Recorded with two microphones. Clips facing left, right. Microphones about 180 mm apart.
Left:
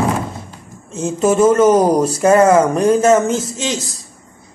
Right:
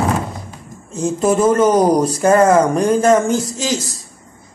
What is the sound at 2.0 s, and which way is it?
Speech, 30° right (ahead or behind).